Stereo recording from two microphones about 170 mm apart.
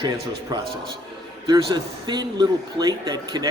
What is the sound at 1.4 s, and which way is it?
A man's voice, 25° right (ahead or behind).